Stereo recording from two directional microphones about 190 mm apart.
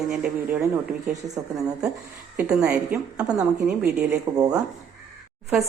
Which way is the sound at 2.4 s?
10° right (ahead or behind).